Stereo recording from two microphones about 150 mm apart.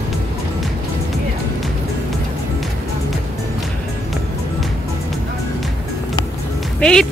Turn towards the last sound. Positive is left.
turn(degrees=5)  # may be behind; listen again after turning